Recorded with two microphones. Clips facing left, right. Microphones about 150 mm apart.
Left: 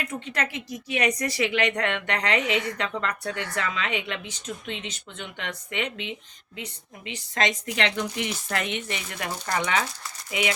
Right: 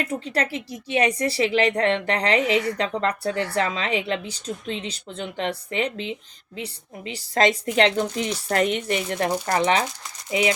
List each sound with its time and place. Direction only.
0.0 s speech: 35° right (ahead or behind)
9.6 s speech: 30° right (ahead or behind)